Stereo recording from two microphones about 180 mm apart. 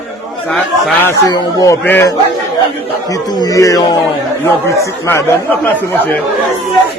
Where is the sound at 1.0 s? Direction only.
20° left (ahead or behind).